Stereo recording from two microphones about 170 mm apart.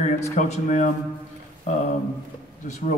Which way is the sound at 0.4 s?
45° left (ahead or behind).